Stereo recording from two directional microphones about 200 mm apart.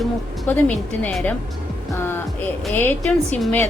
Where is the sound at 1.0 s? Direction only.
10° left (ahead or behind).